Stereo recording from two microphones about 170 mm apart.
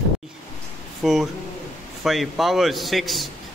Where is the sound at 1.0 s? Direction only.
Centre (ahead or behind).